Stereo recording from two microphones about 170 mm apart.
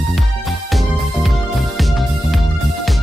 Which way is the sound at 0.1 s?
Centre (ahead or behind).